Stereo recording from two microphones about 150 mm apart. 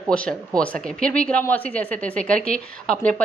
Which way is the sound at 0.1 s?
10° left (ahead or behind).